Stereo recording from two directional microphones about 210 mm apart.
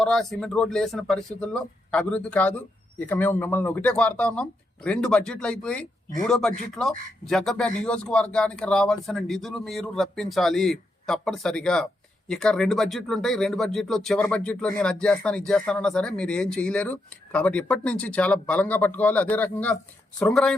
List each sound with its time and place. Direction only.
0.0 s speech: centre (ahead or behind)